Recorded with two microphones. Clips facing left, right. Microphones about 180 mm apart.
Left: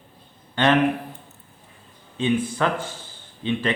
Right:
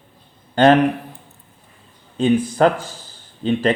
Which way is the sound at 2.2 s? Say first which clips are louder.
Right 7 dB; 40° right (ahead or behind).